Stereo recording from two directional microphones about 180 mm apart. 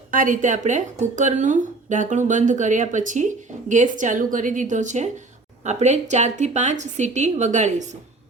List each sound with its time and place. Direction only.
0.1 s a woman's voice: 50° right (ahead or behind)